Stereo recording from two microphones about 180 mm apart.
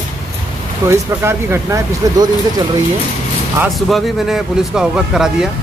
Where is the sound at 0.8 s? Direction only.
15° right (ahead or behind).